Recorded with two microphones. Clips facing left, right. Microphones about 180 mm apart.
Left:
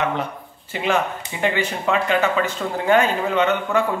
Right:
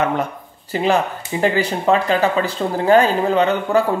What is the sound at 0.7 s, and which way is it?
Speech, 35° right (ahead or behind).